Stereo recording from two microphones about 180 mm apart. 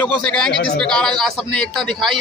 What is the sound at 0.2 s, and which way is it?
A man's voice, 5° left (ahead or behind).